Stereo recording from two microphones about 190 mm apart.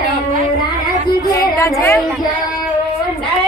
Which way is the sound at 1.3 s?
15° left (ahead or behind).